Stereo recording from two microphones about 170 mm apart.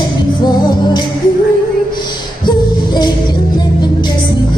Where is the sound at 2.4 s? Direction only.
25° left (ahead or behind).